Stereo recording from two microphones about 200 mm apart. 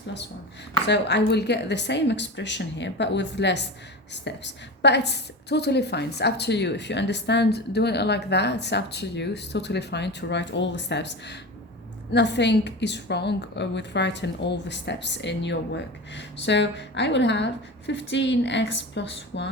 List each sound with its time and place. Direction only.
0.9 s a woman's voice: 60° left (ahead or behind)